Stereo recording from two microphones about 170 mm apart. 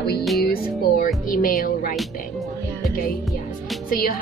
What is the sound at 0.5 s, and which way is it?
Music, 55° left (ahead or behind).